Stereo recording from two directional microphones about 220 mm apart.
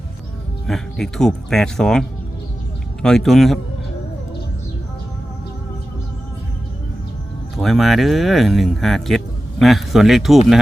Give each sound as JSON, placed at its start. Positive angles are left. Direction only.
{"t": 0.7, "sound": "speech", "side_deg": 0}
{"t": 7.6, "sound": "speech", "side_deg": 0}